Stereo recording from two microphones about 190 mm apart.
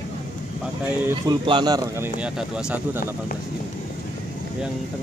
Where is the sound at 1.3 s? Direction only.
25° right (ahead or behind).